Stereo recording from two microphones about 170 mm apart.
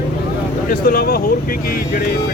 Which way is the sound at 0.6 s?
55° left (ahead or behind).